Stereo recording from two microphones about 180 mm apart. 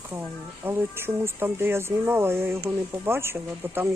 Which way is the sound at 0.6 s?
15° right (ahead or behind).